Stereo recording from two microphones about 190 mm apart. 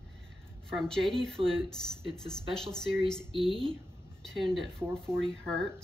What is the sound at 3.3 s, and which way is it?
Speech, 30° right (ahead or behind).